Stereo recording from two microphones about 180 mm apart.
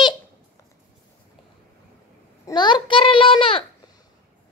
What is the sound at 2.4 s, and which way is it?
A child's voice, 25° left (ahead or behind).